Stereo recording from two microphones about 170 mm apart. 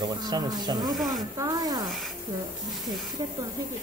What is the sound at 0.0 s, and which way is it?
Speech, 25° right (ahead or behind).